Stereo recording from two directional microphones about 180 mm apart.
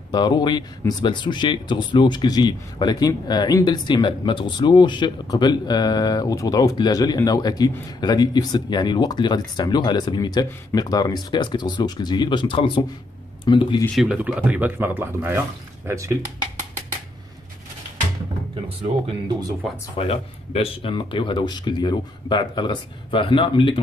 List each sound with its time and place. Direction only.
0.1 s speech: 25° left (ahead or behind)
13.9 s speech: 5° right (ahead or behind)
18.8 s speech: 30° right (ahead or behind)
20.0 s speech: 35° left (ahead or behind)